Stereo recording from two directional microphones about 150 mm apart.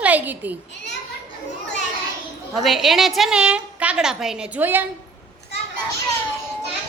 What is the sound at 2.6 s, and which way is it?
A woman's voice, centre (ahead or behind).